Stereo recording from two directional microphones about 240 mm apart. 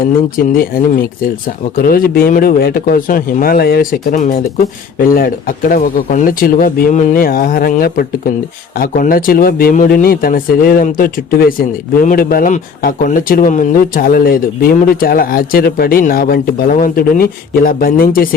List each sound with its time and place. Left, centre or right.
0.0 s speech: left